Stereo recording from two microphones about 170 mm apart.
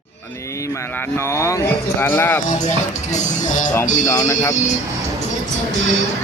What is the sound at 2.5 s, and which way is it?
Music, 45° left (ahead or behind).